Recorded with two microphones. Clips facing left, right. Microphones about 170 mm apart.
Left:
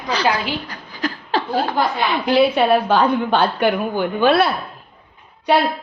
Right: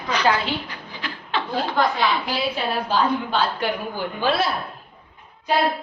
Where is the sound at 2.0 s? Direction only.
60° left (ahead or behind).